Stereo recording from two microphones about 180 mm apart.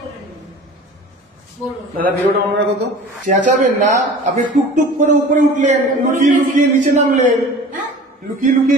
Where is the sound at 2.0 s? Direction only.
50° right (ahead or behind).